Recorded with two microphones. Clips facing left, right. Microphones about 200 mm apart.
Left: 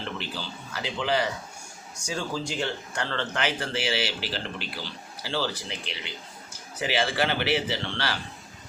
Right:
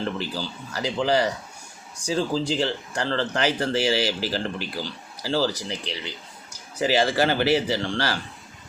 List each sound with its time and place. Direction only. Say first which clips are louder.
0.2 s speech: right 5 dB; 40° right (ahead or behind)